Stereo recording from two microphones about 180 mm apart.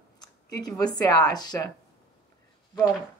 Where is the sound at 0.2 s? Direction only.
20° left (ahead or behind).